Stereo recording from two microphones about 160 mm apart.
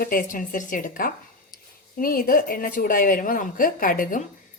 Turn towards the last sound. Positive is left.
turn(degrees=60)  # may be behind; listen again after turning